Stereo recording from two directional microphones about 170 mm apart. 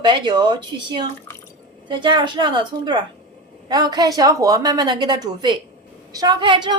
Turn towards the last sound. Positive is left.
turn(degrees=-30)  # may be behind; listen again after turning